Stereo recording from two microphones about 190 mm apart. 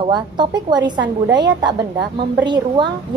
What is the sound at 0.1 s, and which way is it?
A woman's voice, 20° right (ahead or behind).